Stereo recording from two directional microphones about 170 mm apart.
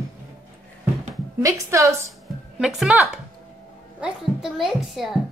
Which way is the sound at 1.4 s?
20° right (ahead or behind).